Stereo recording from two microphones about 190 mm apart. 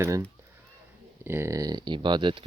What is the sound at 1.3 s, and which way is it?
Speech, 15° right (ahead or behind).